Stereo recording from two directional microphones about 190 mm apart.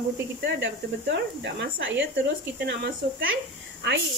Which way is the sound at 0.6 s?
65° right (ahead or behind).